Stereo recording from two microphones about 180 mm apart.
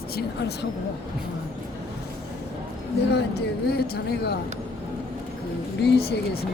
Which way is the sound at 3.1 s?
65° left (ahead or behind).